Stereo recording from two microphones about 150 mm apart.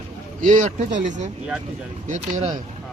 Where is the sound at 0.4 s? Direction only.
55° right (ahead or behind).